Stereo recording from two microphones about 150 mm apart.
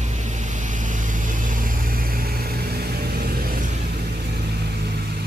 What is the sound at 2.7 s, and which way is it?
Vehicle, 90° right.